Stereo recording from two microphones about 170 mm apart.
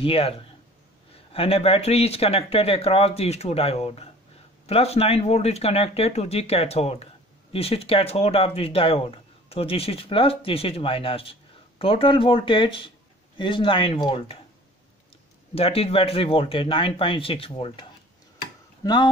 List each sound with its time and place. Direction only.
0.0 s speech: 35° left (ahead or behind)
15.5 s speech: 35° left (ahead or behind)